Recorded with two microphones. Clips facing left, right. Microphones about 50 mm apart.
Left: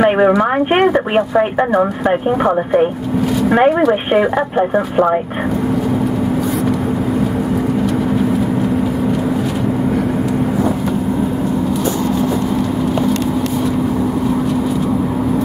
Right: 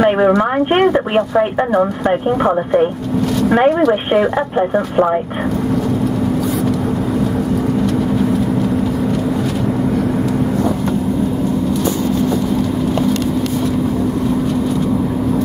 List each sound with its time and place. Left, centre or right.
0.0 s speech: centre